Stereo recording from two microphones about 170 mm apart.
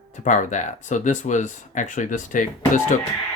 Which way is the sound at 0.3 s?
45° left (ahead or behind).